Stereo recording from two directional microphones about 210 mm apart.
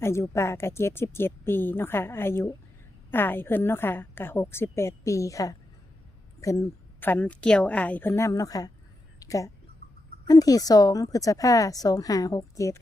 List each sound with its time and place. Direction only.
0.0 s a woman's voice: 15° left (ahead or behind)
9.8 s a sound: 50° right (ahead or behind)
10.2 s a woman's voice: 15° left (ahead or behind)